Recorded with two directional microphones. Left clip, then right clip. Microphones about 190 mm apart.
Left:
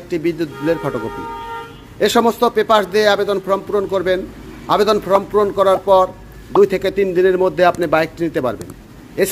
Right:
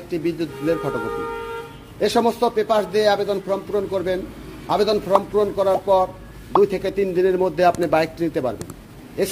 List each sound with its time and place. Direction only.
0.1 s a man's voice: 15° left (ahead or behind)
2.0 s a man's voice: 15° left (ahead or behind)